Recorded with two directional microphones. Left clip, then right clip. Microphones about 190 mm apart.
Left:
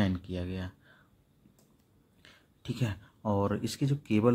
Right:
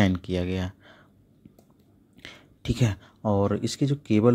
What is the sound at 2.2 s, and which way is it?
Speech, 30° right (ahead or behind).